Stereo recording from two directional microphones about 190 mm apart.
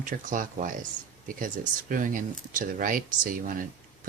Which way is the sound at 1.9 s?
45° right (ahead or behind).